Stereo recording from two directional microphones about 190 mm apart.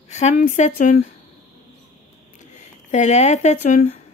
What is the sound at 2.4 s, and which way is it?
Speech, 40° left (ahead or behind).